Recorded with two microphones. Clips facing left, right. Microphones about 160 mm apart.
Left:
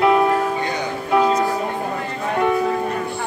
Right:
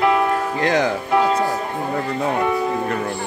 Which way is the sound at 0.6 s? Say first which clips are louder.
Right 6 dB; 90° right.